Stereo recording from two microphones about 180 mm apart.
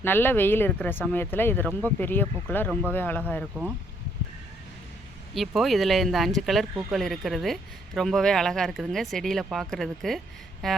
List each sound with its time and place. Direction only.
0.0 s speech: 10° left (ahead or behind)
5.3 s speech: centre (ahead or behind)